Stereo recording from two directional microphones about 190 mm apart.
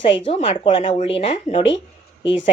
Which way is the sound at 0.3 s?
30° left (ahead or behind).